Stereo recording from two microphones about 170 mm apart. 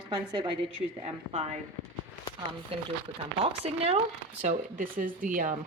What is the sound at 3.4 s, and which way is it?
A woman's voice, 35° right (ahead or behind).